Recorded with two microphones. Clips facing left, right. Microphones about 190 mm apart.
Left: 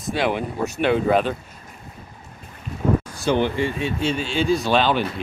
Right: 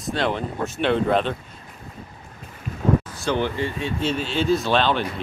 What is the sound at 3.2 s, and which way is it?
Speech, 20° left (ahead or behind).